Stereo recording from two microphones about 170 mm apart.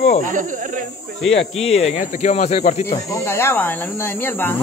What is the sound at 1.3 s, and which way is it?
Speech, 35° left (ahead or behind).